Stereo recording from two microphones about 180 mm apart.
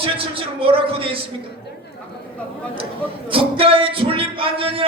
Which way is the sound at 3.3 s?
30° right (ahead or behind).